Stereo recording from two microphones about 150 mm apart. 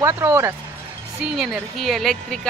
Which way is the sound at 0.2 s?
15° right (ahead or behind).